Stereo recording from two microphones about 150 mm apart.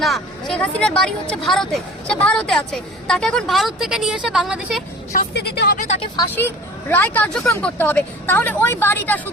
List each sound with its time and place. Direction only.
0.0 s speech: centre (ahead or behind)
5.1 s speech: 90° left
6.3 s speech: 15° left (ahead or behind)